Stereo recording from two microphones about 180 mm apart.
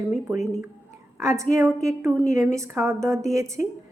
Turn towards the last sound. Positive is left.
turn(degrees=-15)  # may be behind; listen again after turning